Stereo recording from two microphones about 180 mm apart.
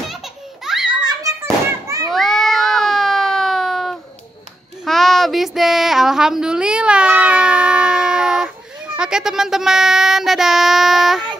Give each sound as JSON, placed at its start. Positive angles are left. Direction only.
{"t": 0.8, "sound": "children playing", "side_deg": -20}
{"t": 2.0, "sound": "cat", "side_deg": 0}
{"t": 4.8, "sound": "child singing", "side_deg": 0}